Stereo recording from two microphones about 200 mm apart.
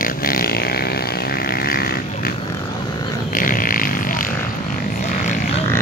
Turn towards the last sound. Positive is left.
turn(degrees=45)  # may be behind; listen again after turning